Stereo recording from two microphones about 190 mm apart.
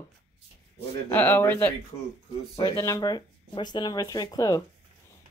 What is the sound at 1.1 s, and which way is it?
Speech, 10° left (ahead or behind).